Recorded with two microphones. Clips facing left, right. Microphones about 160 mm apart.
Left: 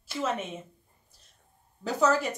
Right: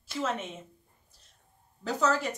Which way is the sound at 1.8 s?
10° left (ahead or behind).